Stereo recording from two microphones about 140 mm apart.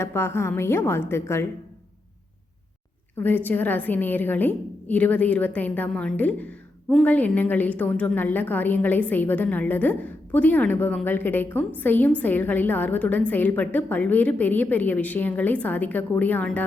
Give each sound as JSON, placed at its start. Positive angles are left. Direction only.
{"t": 0.0, "sound": "a woman's voice", "side_deg": 15}
{"t": 3.2, "sound": "a woman's voice", "side_deg": 10}